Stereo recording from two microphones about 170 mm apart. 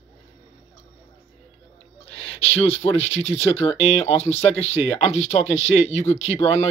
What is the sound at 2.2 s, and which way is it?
Speech, 35° left (ahead or behind).